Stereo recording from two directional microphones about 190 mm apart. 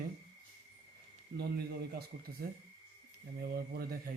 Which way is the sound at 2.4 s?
55° right (ahead or behind).